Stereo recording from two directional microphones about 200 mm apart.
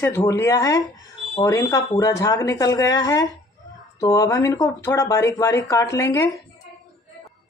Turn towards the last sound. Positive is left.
turn(degrees=10)  # may be behind; listen again after turning